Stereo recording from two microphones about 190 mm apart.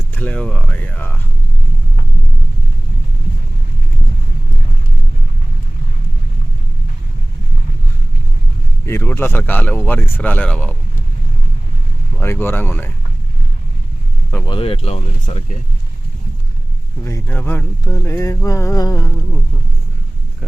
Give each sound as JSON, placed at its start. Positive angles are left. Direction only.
{"t": 0.1, "sound": "speech", "side_deg": 5}
{"t": 8.9, "sound": "speech", "side_deg": 10}
{"t": 12.1, "sound": "speech", "side_deg": 10}
{"t": 14.4, "sound": "speech", "side_deg": 25}
{"t": 17.0, "sound": "speech", "side_deg": 15}